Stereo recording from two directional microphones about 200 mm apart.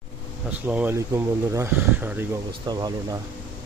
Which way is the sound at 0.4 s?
5° right (ahead or behind).